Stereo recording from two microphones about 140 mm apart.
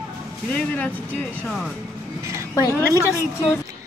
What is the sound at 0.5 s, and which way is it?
Speech, 10° left (ahead or behind).